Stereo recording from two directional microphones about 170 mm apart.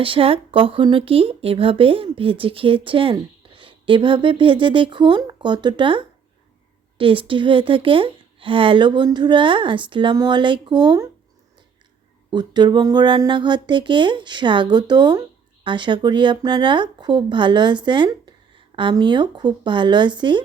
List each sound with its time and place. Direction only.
0.0 s speech: 30° right (ahead or behind)
12.3 s speech: 25° right (ahead or behind)